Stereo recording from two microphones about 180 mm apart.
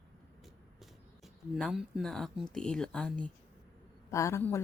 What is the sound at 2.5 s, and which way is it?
Speech, 5° left (ahead or behind).